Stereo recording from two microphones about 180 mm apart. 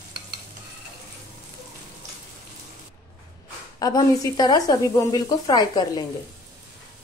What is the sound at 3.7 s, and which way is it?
Speech, 20° left (ahead or behind).